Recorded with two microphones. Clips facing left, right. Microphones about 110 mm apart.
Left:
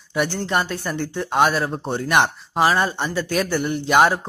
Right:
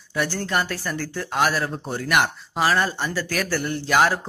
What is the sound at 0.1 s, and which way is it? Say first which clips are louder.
Speech: left 3 dB; 20° left (ahead or behind).